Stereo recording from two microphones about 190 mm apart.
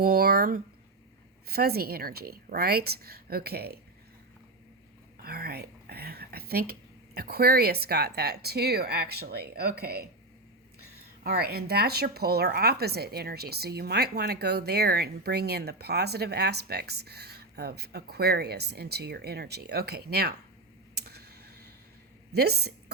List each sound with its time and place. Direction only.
0.0 s a woman's voice: 50° right (ahead or behind)
5.1 s speech: 50° right (ahead or behind)
11.2 s speech: 55° right (ahead or behind)
20.9 s a sound: 55° right (ahead or behind)
22.3 s a woman's voice: 60° right (ahead or behind)